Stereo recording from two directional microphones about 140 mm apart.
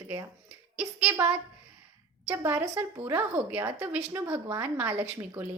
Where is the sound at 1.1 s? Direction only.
15° right (ahead or behind).